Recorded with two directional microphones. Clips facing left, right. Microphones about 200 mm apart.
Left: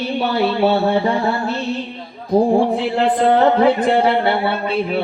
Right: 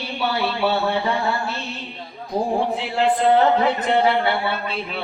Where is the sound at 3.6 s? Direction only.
35° left (ahead or behind).